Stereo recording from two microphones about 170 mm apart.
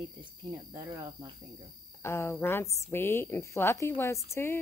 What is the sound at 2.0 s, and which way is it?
A woman's voice, 15° left (ahead or behind).